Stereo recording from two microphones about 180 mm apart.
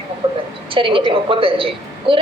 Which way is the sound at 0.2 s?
30° right (ahead or behind).